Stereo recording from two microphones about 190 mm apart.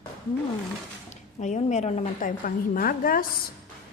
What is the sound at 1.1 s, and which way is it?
A woman's voice, 40° left (ahead or behind).